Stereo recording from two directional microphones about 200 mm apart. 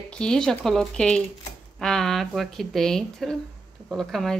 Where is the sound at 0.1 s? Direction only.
5° left (ahead or behind).